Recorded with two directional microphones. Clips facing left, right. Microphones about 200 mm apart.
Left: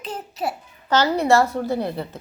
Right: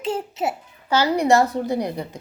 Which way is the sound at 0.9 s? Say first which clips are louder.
Even; 10° right (ahead or behind).